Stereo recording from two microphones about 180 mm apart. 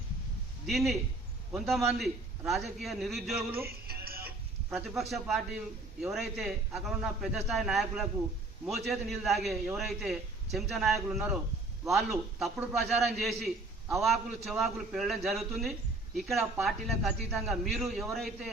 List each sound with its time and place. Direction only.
0.7 s a man's voice: centre (ahead or behind)
3.7 s music: 60° right (ahead or behind)
4.7 s a man's voice: centre (ahead or behind)